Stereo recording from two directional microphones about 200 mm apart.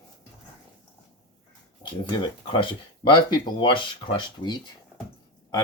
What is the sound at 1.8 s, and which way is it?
Speech, 25° left (ahead or behind).